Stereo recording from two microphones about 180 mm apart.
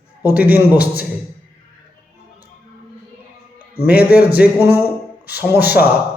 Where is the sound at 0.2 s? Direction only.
10° right (ahead or behind).